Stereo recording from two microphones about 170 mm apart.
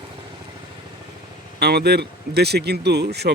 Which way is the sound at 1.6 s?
70° right (ahead or behind).